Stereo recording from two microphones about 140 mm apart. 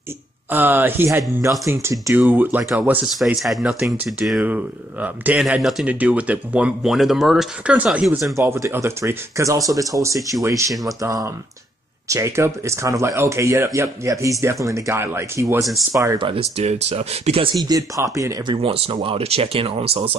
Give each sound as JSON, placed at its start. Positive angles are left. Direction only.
{"t": 0.5, "sound": "speech", "side_deg": -15}
{"t": 3.3, "sound": "speech", "side_deg": 0}
{"t": 8.4, "sound": "speech", "side_deg": -20}
{"t": 10.7, "sound": "speech", "side_deg": 0}
{"t": 11.0, "sound": "speech", "side_deg": -25}
{"t": 16.2, "sound": "speech", "side_deg": -40}
{"t": 17.6, "sound": "speech", "side_deg": -25}
{"t": 18.5, "sound": "speech", "side_deg": -40}